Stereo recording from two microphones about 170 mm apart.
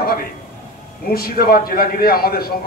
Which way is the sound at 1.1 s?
60° left (ahead or behind).